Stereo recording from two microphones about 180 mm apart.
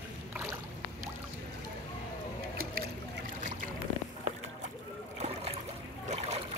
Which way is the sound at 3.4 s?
45° right (ahead or behind).